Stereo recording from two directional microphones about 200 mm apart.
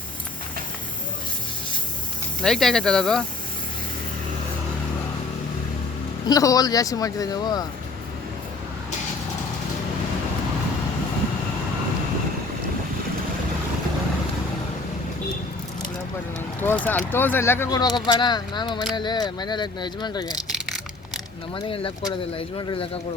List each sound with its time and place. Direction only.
2.4 s speech: centre (ahead or behind)
6.2 s speech: 15° left (ahead or behind)
16.6 s speech: 10° left (ahead or behind)
21.5 s speech: 25° left (ahead or behind)